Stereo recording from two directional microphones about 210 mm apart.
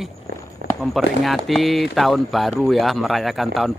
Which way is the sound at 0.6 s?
40° right (ahead or behind).